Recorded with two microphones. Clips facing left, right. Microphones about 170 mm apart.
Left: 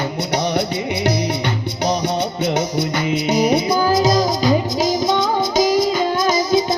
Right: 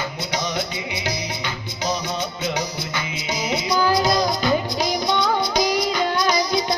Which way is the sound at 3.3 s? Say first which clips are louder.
Left 7 dB; 60° left (ahead or behind).